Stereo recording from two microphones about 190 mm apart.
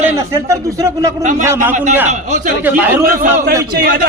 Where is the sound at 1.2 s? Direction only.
40° right (ahead or behind).